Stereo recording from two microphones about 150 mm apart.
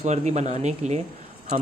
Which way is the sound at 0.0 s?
50° right (ahead or behind).